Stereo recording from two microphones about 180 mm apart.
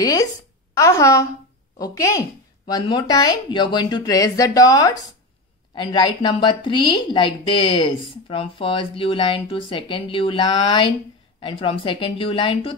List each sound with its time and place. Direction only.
0.0 s a woman's voice: 20° left (ahead or behind)